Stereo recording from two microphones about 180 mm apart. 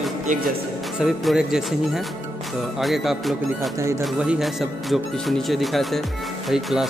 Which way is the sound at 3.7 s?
15° right (ahead or behind).